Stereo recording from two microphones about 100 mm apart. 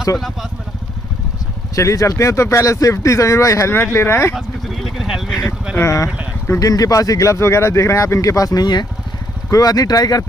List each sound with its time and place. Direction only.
1.8 s speech: 30° left (ahead or behind)
4.4 s vehicle: centre (ahead or behind)
5.8 s speech: 30° left (ahead or behind)